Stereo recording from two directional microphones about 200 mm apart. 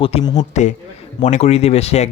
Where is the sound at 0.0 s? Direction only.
30° left (ahead or behind).